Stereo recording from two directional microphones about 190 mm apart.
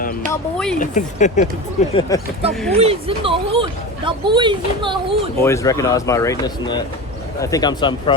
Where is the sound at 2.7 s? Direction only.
30° right (ahead or behind).